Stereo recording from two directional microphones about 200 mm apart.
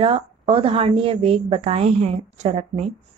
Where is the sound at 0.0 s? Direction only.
25° right (ahead or behind).